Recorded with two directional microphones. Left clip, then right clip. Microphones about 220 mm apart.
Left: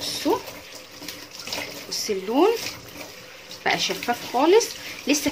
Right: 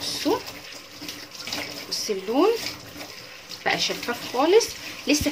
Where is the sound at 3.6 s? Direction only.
10° left (ahead or behind).